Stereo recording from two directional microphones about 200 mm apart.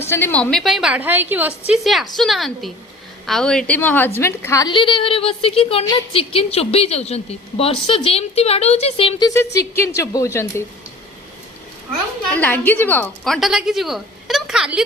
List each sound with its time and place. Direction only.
0.1 s a woman's voice: 10° left (ahead or behind)
12.3 s a woman's voice: 10° left (ahead or behind)